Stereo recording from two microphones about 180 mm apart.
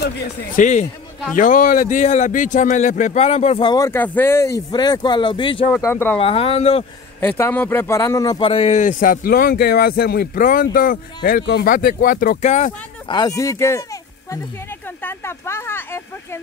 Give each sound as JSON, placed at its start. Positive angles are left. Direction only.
{"t": 0.6, "sound": "speech", "side_deg": 40}
{"t": 3.6, "sound": "speech", "side_deg": 20}
{"t": 5.8, "sound": "speech", "side_deg": 15}
{"t": 6.1, "sound": "speech", "side_deg": 30}
{"t": 7.2, "sound": "speech", "side_deg": 10}
{"t": 8.5, "sound": "speech", "side_deg": 35}
{"t": 13.1, "sound": "speech", "side_deg": 20}
{"t": 15.0, "sound": "speech", "side_deg": 10}